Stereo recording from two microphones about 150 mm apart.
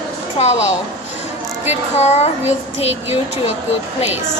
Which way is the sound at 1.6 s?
45° left (ahead or behind).